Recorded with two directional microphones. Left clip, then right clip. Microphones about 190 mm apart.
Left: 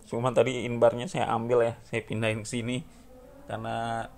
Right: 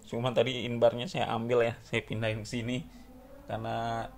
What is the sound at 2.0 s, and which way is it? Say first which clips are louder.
Speech: left 4 dB; 25° left (ahead or behind).